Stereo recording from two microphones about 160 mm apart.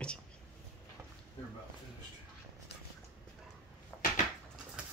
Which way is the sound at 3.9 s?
20° left (ahead or behind).